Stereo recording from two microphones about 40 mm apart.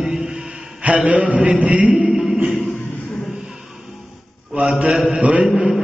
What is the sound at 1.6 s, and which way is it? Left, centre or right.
Speech, right.